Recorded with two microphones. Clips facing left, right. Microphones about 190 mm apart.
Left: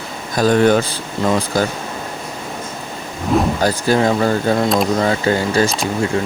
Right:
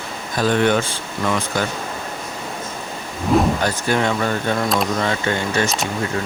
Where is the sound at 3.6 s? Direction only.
35° left (ahead or behind).